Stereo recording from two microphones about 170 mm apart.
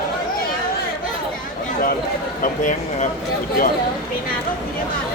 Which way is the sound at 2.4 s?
50° left (ahead or behind).